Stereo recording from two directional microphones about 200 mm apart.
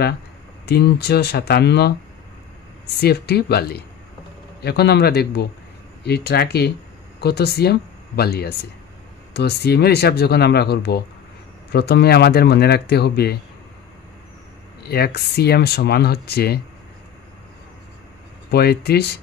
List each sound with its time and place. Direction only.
0.7 s speech: 55° left (ahead or behind)
3.0 s speech: 55° left (ahead or behind)
14.8 s speech: 50° left (ahead or behind)
18.5 s speech: 50° left (ahead or behind)